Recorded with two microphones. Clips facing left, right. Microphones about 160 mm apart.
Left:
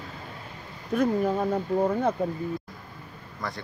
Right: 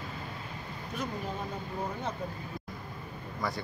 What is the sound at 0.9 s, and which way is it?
Speech, 60° left (ahead or behind).